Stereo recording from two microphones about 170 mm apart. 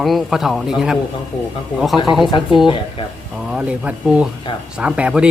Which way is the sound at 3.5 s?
10° right (ahead or behind).